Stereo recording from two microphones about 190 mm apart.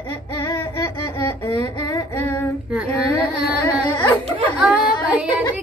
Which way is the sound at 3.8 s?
25° left (ahead or behind).